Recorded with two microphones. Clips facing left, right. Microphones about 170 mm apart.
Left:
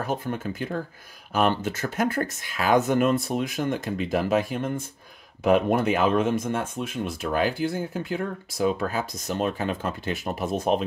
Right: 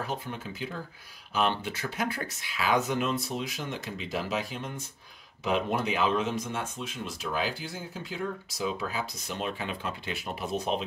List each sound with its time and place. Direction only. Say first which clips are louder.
0.0 s speech: left 7 dB; 50° left (ahead or behind)